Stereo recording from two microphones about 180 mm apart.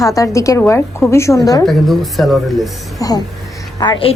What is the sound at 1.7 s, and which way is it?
A woman's voice, centre (ahead or behind).